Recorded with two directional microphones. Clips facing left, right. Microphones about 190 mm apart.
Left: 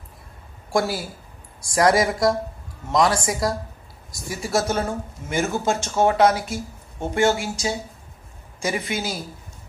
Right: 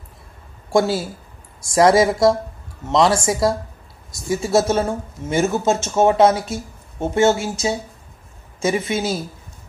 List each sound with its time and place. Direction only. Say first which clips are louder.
0.7 s speech: right 5 dB; 25° right (ahead or behind)